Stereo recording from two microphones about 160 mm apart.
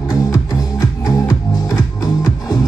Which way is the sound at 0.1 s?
25° left (ahead or behind).